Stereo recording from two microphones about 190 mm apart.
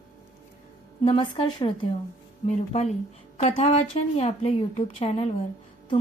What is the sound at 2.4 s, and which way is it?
A woman's voice, 35° left (ahead or behind).